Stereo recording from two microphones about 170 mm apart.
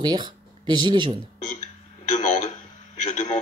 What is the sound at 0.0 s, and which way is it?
Speech, 25° right (ahead or behind).